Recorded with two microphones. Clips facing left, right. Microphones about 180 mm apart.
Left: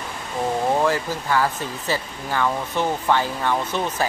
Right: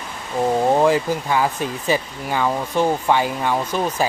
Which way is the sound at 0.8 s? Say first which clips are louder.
Right 5 dB; 15° right (ahead or behind).